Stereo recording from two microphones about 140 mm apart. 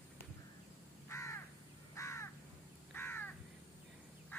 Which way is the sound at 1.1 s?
20° left (ahead or behind).